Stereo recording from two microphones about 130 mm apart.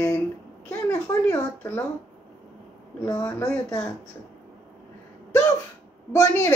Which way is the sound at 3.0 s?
20° left (ahead or behind).